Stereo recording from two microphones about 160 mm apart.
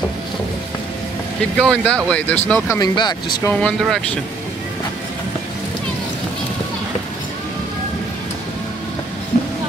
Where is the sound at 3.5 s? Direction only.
5° left (ahead or behind).